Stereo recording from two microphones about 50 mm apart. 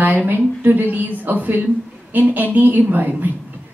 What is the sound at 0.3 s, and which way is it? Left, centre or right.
A woman's voice, right.